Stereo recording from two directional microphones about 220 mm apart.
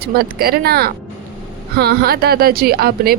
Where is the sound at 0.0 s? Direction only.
45° right (ahead or behind).